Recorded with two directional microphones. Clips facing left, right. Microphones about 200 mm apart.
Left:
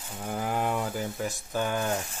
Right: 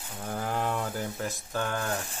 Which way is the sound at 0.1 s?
10° left (ahead or behind).